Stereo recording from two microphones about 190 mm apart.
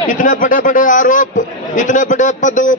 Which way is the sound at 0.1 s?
45° left (ahead or behind).